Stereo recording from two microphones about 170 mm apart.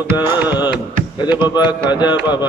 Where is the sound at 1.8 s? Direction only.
25° left (ahead or behind).